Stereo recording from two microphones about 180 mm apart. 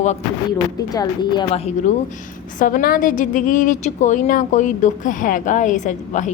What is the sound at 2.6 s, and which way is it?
A woman's voice, 50° left (ahead or behind).